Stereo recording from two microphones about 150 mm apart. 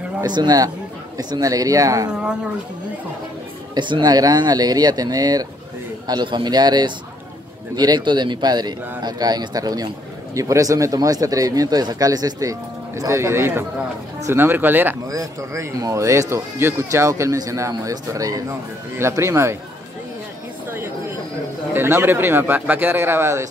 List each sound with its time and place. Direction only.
0.2 s speech: 25° right (ahead or behind)
3.7 s speech: 30° right (ahead or behind)
21.7 s speech: 15° right (ahead or behind)